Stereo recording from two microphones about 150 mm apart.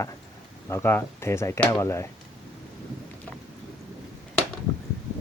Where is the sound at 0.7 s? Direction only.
15° left (ahead or behind).